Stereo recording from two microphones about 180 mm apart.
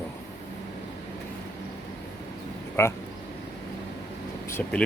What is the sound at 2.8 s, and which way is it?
Speech, 15° left (ahead or behind).